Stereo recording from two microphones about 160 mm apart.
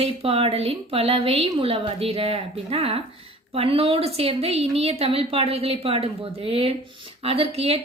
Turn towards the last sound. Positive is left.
turn(degrees=-40)  # may be behind; listen again after turning